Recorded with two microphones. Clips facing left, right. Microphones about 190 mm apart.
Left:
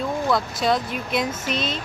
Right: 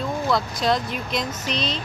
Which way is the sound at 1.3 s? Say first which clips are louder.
Left 1 dB; 50° left (ahead or behind).